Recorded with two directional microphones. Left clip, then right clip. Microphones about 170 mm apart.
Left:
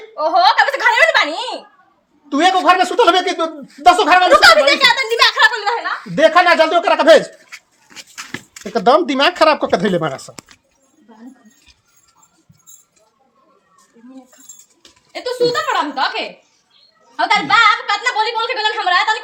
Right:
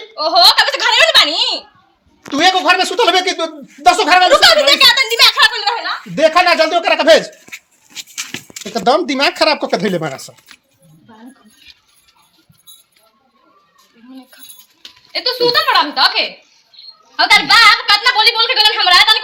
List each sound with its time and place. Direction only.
0.2 s a woman's voice: 25° left (ahead or behind)
2.3 s a woman's voice: 5° right (ahead or behind)
4.3 s a woman's voice: 20° left (ahead or behind)
6.1 s a woman's voice: 5° right (ahead or behind)
8.1 s a sound: 5° right (ahead or behind)
8.7 s a woman's voice: centre (ahead or behind)
14.8 s goat: 15° left (ahead or behind)
15.5 s a woman's voice: 5° left (ahead or behind)